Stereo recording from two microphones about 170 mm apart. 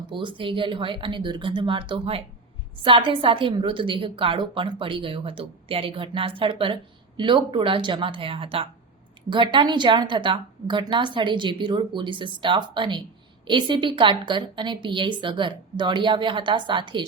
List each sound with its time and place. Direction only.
0.1 s a woman's voice: 30° right (ahead or behind)